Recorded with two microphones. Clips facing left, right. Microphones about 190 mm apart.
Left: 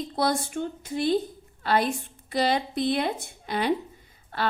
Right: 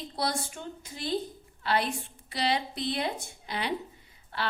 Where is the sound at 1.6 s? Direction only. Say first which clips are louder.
Left 5 dB; 45° left (ahead or behind).